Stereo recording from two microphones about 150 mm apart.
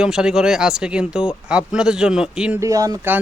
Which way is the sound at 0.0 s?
5° right (ahead or behind).